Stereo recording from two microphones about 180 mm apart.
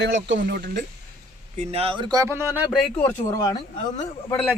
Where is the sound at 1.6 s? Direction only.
35° right (ahead or behind); by 2.8 s 10° right (ahead or behind).